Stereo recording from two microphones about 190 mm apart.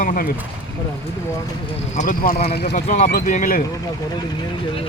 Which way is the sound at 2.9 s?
45° left (ahead or behind).